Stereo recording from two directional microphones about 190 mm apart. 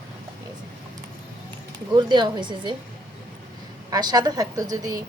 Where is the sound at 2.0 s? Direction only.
25° right (ahead or behind).